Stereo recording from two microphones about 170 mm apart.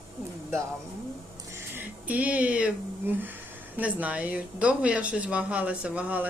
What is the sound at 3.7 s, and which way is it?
Speech, 10° right (ahead or behind).